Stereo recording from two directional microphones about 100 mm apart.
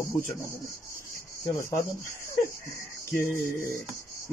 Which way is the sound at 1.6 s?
25° left (ahead or behind).